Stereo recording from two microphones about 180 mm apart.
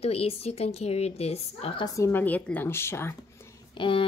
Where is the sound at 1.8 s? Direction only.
15° left (ahead or behind).